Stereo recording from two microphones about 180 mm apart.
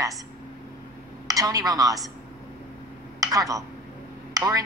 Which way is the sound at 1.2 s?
20° right (ahead or behind).